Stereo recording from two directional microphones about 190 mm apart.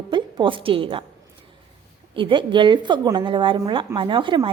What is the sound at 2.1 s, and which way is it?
A woman's voice, 25° right (ahead or behind).